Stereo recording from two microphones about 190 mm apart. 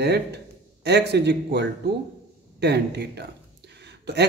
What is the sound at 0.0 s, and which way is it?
Speech, 60° right (ahead or behind).